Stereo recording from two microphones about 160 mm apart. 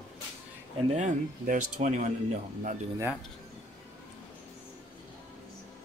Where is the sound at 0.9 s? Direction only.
50° right (ahead or behind).